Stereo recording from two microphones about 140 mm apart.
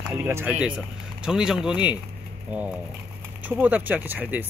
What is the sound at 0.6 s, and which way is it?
Speech, 5° right (ahead or behind).